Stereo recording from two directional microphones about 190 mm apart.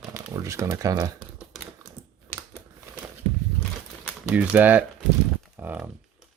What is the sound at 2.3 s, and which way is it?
Typewriter, 15° left (ahead or behind).